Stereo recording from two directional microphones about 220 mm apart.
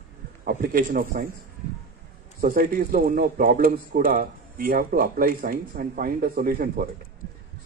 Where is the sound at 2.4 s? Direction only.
40° right (ahead or behind).